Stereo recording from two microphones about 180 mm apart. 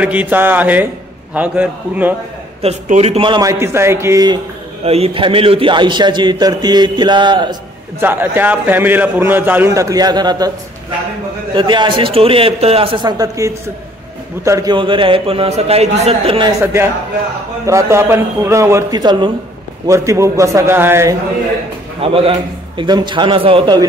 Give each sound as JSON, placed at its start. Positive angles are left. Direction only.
{"t": 0.0, "sound": "a man's voice", "side_deg": -10}
{"t": 2.6, "sound": "a man's voice", "side_deg": -35}
{"t": 4.8, "sound": "a man's voice", "side_deg": -35}
{"t": 8.0, "sound": "a man's voice", "side_deg": -10}
{"t": 11.5, "sound": "a man's voice", "side_deg": -25}
{"t": 16.6, "sound": "a man's voice", "side_deg": -15}
{"t": 22.0, "sound": "a man's voice", "side_deg": -30}